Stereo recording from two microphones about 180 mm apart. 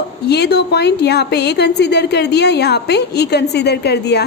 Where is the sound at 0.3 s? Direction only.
65° left (ahead or behind).